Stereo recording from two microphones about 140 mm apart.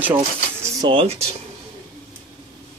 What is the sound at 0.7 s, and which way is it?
Speech, 35° right (ahead or behind).